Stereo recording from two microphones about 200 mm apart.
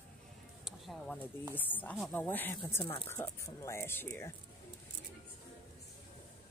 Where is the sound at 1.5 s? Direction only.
10° left (ahead or behind).